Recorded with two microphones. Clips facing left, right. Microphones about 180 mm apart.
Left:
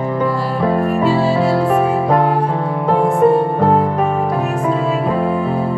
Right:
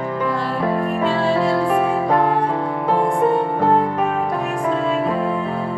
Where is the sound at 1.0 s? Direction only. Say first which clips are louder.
Left 2 dB; 5° left (ahead or behind).